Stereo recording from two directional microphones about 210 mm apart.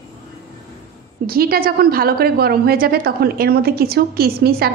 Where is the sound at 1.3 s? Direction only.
45° right (ahead or behind).